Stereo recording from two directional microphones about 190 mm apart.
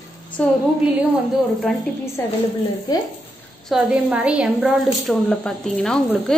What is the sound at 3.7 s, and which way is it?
A woman's voice, 5° right (ahead or behind).